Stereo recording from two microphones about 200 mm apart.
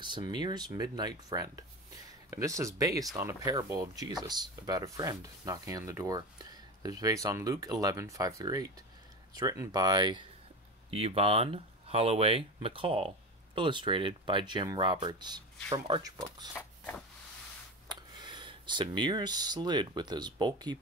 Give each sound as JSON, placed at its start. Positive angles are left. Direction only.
{"t": 0.0, "sound": "speech", "side_deg": -25}
{"t": 16.5, "sound": "a sound", "side_deg": 10}
{"t": 18.1, "sound": "speech", "side_deg": -25}